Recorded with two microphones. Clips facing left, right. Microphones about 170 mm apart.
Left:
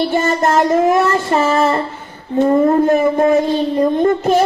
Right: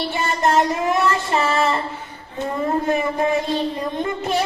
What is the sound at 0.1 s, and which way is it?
Child singing, 45° left (ahead or behind).